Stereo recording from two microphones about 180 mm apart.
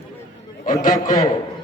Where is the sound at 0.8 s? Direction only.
50° left (ahead or behind).